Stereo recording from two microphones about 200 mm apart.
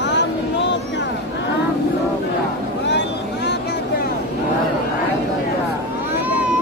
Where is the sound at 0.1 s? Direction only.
60° left (ahead or behind).